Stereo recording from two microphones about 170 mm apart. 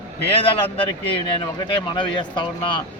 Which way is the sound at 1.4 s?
30° left (ahead or behind).